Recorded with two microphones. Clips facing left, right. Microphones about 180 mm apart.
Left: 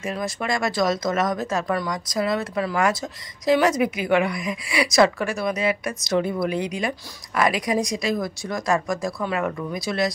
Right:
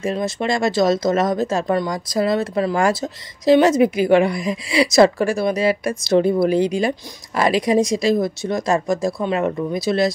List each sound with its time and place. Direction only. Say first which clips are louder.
0.0 s speech: right 6 dB; 25° right (ahead or behind)